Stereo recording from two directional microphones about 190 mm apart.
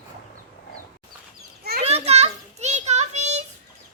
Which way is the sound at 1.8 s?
35° right (ahead or behind).